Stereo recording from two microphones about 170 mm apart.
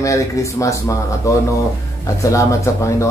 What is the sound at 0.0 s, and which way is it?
Speech, 20° left (ahead or behind).